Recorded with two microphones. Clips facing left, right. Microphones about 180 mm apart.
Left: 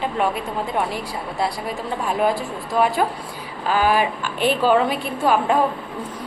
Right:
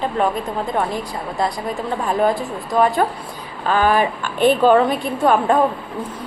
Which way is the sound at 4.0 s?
45° right (ahead or behind).